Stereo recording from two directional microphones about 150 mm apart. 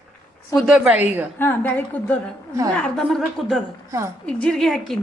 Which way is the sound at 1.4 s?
10° left (ahead or behind).